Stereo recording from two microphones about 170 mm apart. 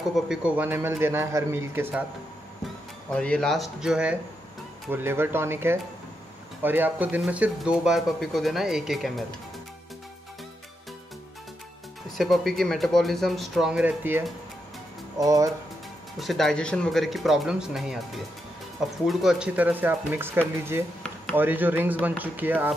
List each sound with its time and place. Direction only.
0.1 s a man's voice: 5° right (ahead or behind)
3.1 s a man's voice: 5° left (ahead or behind)
12.2 s speech: centre (ahead or behind)
15.1 s speech: 20° right (ahead or behind)
16.2 s a man's voice: centre (ahead or behind)